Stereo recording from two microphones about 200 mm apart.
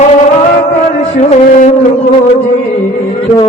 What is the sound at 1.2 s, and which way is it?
Music, 35° left (ahead or behind).